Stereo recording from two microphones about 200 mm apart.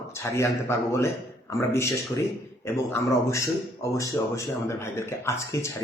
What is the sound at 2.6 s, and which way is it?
A man's voice, 15° left (ahead or behind).